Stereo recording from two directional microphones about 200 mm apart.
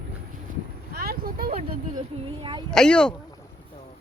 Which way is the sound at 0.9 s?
50° right (ahead or behind).